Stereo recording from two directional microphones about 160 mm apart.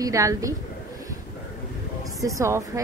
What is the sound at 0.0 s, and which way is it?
Speech, 20° right (ahead or behind).